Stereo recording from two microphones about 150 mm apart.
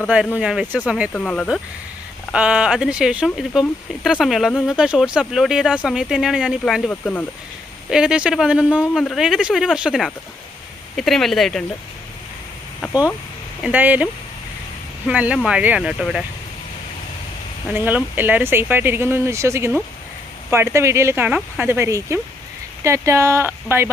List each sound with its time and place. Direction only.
0.3 s speech: 5° right (ahead or behind)
1.1 s speech: 10° left (ahead or behind)
2.3 s speech: 5° right (ahead or behind)
13.6 s speech: 10° right (ahead or behind)
17.7 s speech: 10° right (ahead or behind)